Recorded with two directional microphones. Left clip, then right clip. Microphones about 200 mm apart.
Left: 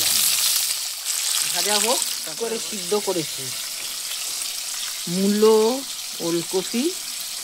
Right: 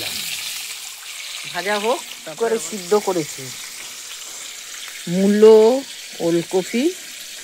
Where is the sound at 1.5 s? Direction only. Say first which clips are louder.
Right 3 dB; 25° right (ahead or behind).